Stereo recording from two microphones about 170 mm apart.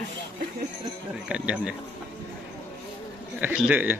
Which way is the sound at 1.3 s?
5° right (ahead or behind).